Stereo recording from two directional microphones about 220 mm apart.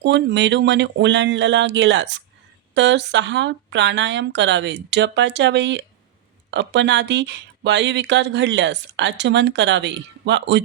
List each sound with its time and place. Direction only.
0.0 s speech: 50° right (ahead or behind)